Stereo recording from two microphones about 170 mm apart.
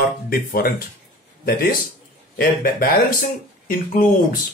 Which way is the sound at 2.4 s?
60° left (ahead or behind).